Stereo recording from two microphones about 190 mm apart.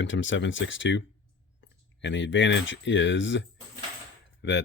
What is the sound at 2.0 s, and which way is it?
Speech, 70° left (ahead or behind).